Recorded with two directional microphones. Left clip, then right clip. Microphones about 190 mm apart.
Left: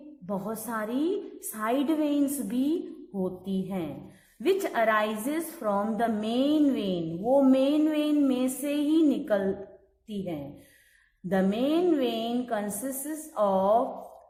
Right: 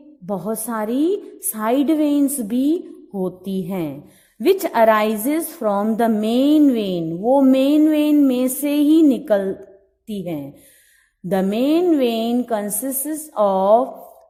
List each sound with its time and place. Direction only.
0.3 s a woman's voice: 40° right (ahead or behind)
11.3 s a woman's voice: 45° right (ahead or behind)